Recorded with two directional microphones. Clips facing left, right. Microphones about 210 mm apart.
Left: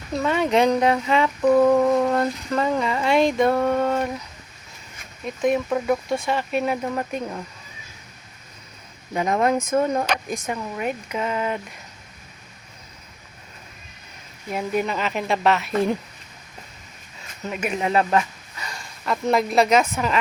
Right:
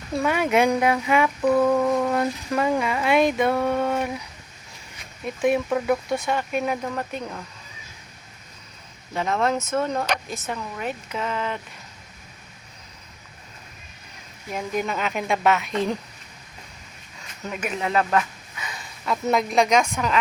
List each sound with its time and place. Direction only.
0.1 s speech: 10° right (ahead or behind)
1.4 s a sound: 10° left (ahead or behind)
2.1 s speech: 10° right (ahead or behind)
5.6 s speech: centre (ahead or behind)
9.1 s speech: 15° left (ahead or behind)
14.5 s speech: 5° left (ahead or behind)
17.5 s speech: 10° left (ahead or behind)
17.7 s speech: 30° left (ahead or behind)
18.6 s speech: centre (ahead or behind)